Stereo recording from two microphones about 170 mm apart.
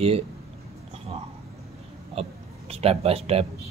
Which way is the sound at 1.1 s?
35° right (ahead or behind).